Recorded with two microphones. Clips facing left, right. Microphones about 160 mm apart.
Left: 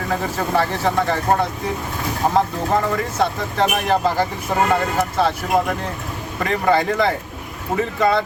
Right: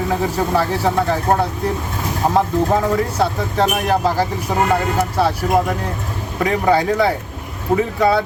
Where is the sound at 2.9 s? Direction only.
10° right (ahead or behind).